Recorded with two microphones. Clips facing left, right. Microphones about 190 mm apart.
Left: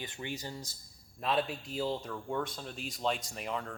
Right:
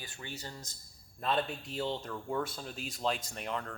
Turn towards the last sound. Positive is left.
turn(degrees=0)  # may be behind; listen again after turning